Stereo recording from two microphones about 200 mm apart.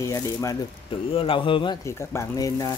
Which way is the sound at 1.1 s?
25° left (ahead or behind).